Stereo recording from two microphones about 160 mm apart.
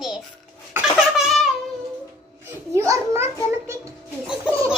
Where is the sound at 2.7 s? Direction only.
20° right (ahead or behind).